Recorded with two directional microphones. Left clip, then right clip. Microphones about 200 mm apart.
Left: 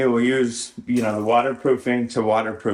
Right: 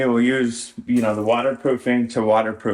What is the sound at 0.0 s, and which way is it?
Speech, centre (ahead or behind).